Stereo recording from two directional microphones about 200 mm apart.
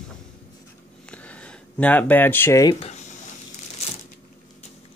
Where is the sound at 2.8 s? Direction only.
35° left (ahead or behind).